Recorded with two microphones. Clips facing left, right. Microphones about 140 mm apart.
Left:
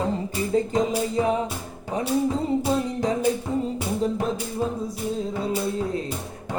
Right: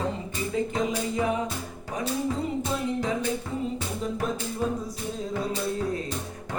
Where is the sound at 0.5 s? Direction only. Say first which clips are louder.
Left 5 dB; 30° left (ahead or behind).